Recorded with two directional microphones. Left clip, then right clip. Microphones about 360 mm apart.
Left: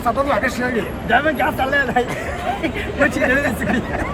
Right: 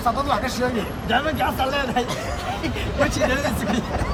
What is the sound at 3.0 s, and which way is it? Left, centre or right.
Speech, centre.